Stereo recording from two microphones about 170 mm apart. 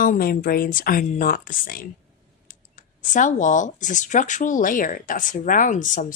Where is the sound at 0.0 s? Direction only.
55° left (ahead or behind).